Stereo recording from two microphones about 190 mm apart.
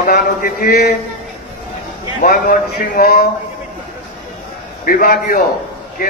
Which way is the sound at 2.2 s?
45° left (ahead or behind).